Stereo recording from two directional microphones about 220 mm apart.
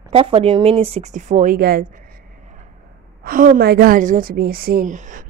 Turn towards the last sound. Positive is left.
turn(degrees=-35)  # may be behind; listen again after turning